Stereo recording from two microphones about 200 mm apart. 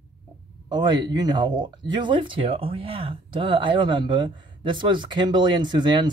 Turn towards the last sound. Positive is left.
turn(degrees=-20)  # may be behind; listen again after turning